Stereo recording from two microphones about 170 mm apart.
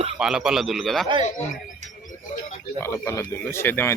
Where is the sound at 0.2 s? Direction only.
5° right (ahead or behind).